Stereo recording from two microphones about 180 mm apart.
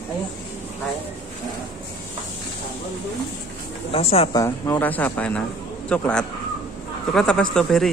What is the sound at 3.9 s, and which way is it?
Speech, 30° left (ahead or behind).